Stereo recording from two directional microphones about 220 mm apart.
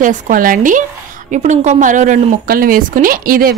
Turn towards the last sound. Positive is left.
turn(degrees=-40)  # may be behind; listen again after turning